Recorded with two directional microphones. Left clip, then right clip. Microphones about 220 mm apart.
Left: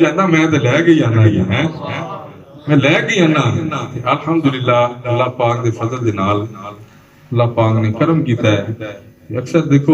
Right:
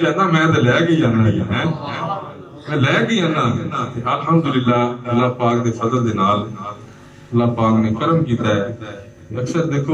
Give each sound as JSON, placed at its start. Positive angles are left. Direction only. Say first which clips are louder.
{"t": 0.0, "sound": "a man's voice", "louder": "left 3 dB", "side_deg": 45}